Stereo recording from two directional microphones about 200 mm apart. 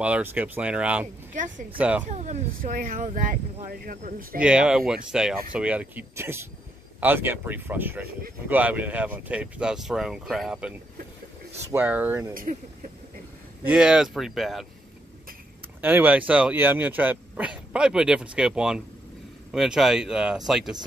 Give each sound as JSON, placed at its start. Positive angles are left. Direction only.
{"t": 0.0, "sound": "speech", "side_deg": -10}
{"t": 1.3, "sound": "speech", "side_deg": -40}
{"t": 1.8, "sound": "speech", "side_deg": -5}
{"t": 2.0, "sound": "speech", "side_deg": -35}
{"t": 4.4, "sound": "speech", "side_deg": -5}
{"t": 12.4, "sound": "speech", "side_deg": -40}
{"t": 13.7, "sound": "speech", "side_deg": -5}
{"t": 15.8, "sound": "speech", "side_deg": -10}